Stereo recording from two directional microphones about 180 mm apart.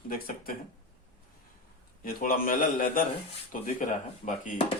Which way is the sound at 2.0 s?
50° left (ahead or behind).